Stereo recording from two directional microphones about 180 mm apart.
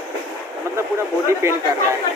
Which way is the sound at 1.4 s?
15° right (ahead or behind).